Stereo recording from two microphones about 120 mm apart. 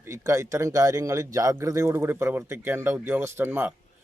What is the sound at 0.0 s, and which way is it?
Speech, 25° right (ahead or behind).